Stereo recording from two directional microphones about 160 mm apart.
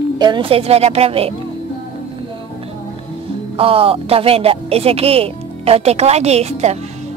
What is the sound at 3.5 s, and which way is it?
Speech, 35° right (ahead or behind).